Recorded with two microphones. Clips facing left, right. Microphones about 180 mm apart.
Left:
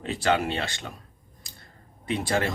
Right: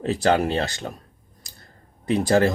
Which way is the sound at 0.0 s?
40° right (ahead or behind).